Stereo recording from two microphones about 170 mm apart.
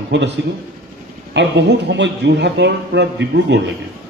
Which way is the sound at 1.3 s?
90° right.